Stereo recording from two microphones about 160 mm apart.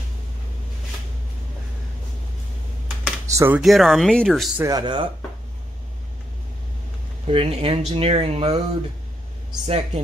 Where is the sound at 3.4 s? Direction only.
10° right (ahead or behind).